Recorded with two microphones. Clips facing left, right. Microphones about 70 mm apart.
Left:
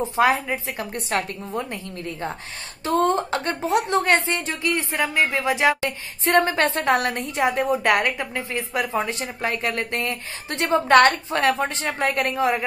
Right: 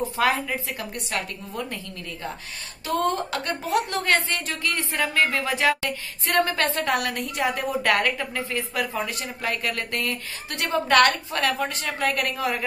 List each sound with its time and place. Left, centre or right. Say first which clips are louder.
0.0 s a woman's voice: left 3 dB; left
2.8 s a woman's voice: left 4 dB; left